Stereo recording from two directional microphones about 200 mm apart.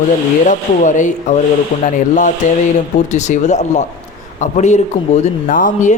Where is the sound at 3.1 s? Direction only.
35° left (ahead or behind).